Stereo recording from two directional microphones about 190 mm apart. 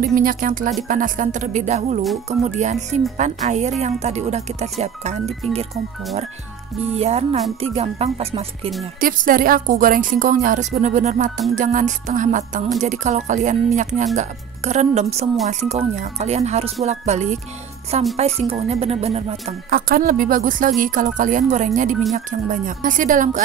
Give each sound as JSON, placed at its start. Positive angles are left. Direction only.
{"t": 0.0, "sound": "a woman's voice", "side_deg": -50}
{"t": 6.8, "sound": "speech", "side_deg": -35}
{"t": 9.0, "sound": "a woman's voice", "side_deg": -50}
{"t": 19.7, "sound": "a woman's voice", "side_deg": -50}